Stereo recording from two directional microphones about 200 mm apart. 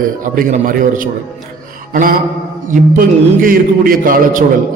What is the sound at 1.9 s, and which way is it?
Mantra, 45° right (ahead or behind).